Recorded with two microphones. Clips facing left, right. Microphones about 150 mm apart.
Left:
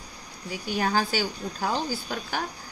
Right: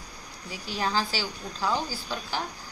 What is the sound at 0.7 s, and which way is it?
Speech, 55° left (ahead or behind).